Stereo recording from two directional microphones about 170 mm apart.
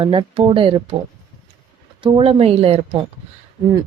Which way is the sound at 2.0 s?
30° right (ahead or behind).